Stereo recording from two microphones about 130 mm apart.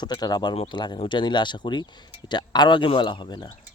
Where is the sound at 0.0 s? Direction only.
30° left (ahead or behind).